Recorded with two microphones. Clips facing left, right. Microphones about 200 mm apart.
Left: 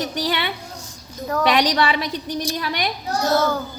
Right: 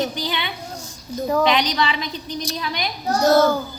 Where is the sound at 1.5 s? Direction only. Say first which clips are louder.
Left 2 dB; 75° left (ahead or behind).